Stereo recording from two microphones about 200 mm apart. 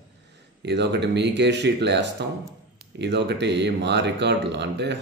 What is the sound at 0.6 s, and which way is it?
Speech, 60° right (ahead or behind).